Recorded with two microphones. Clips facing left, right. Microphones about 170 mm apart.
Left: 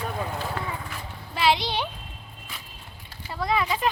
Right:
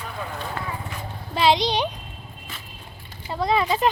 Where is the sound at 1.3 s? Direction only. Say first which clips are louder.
Right 4 dB; 25° right (ahead or behind).